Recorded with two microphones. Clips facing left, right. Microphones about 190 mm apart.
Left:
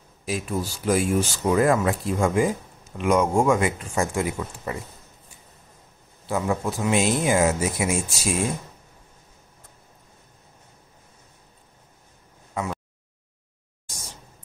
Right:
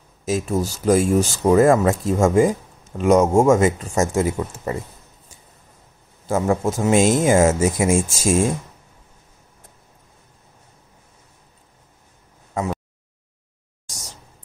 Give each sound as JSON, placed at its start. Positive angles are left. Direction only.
{"t": 0.2, "sound": "speech", "side_deg": -45}
{"t": 6.2, "sound": "speech", "side_deg": -45}
{"t": 13.8, "sound": "a sound", "side_deg": -40}